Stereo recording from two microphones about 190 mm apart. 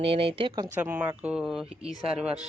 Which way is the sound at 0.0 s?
30° right (ahead or behind).